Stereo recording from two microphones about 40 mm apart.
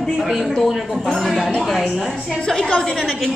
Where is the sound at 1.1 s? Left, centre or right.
Centre.